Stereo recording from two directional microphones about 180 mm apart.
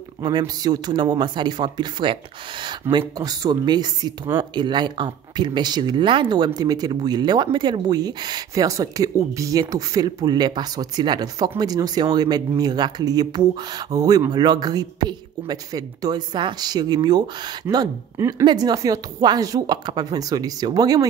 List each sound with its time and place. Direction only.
0.2 s speech: 25° right (ahead or behind)